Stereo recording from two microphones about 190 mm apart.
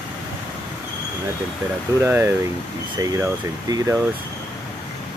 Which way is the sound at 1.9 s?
10° right (ahead or behind).